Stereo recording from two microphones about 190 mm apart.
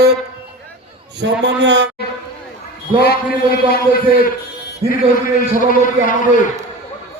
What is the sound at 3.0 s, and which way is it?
A man's voice, 55° left (ahead or behind).